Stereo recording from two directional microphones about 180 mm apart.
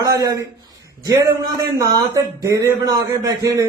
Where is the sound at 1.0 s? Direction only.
20° right (ahead or behind).